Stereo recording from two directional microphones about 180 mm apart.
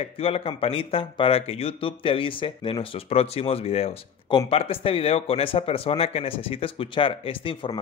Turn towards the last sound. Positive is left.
turn(degrees=30)  # may be behind; listen again after turning